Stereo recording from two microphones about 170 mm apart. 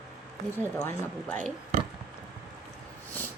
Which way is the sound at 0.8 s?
15° left (ahead or behind).